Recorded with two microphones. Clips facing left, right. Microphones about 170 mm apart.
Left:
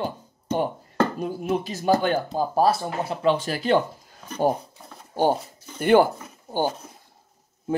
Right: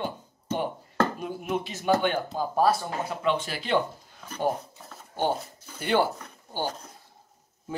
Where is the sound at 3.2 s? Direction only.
40° left (ahead or behind).